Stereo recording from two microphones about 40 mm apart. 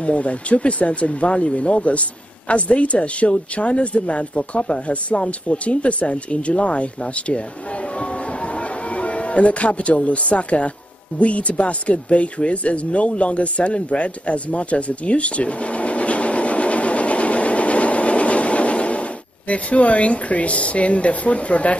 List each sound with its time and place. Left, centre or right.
0.0 s speech: left
8.5 s speech: left